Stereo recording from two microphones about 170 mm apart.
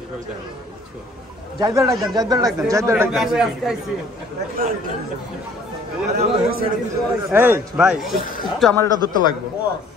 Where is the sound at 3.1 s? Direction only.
5° right (ahead or behind).